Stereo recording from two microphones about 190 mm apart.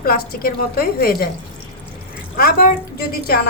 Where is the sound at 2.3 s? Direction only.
50° left (ahead or behind).